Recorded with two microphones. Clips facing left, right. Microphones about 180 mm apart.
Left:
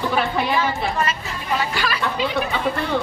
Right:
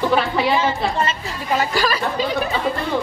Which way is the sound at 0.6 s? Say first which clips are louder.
Right 2 dB; 25° right (ahead or behind).